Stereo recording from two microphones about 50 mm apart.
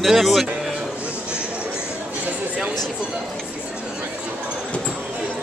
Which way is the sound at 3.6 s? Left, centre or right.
Right.